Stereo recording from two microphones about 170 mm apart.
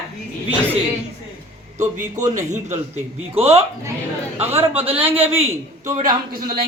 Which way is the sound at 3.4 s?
15° right (ahead or behind).